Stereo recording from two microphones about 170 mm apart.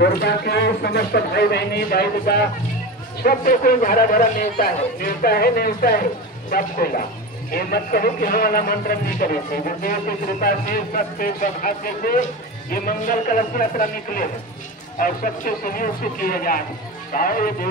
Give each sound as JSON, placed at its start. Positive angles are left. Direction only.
{"t": 0.0, "sound": "speech", "side_deg": 70}